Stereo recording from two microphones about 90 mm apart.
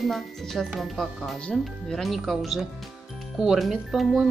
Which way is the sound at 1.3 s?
10° left (ahead or behind).